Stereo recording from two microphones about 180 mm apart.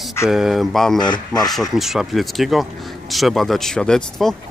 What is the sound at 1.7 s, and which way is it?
Speech, centre (ahead or behind).